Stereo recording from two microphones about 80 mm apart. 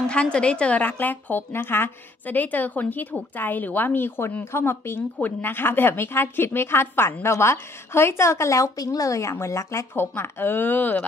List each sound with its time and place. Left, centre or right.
0.1 s a woman's voice: centre